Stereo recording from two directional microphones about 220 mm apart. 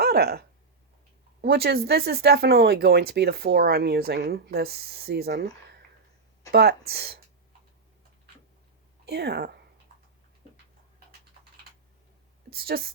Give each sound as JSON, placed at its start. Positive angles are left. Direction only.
{"t": 0.0, "sound": "speech", "side_deg": -45}
{"t": 6.5, "sound": "speech", "side_deg": -45}
{"t": 9.0, "sound": "speech", "side_deg": -50}
{"t": 12.5, "sound": "a woman's voice", "side_deg": -45}